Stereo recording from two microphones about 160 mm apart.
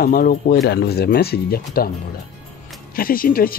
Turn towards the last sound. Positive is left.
turn(degrees=65)  # may be behind; listen again after turning